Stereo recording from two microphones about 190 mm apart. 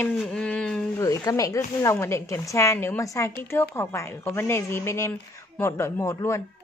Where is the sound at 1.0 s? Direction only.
15° left (ahead or behind).